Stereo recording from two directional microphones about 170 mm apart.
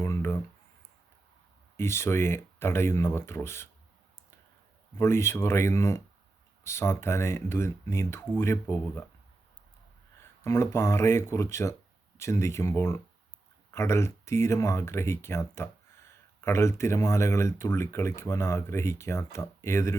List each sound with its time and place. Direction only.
0.0 s a sound: 15° left (ahead or behind)
1.7 s speech: 15° left (ahead or behind)
4.9 s speech: 15° left (ahead or behind)
10.4 s speech: 15° left (ahead or behind)